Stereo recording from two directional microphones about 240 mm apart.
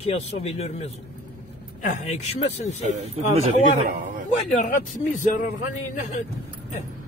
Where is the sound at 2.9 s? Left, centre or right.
Right.